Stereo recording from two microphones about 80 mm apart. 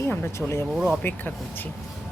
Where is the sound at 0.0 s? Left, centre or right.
Left.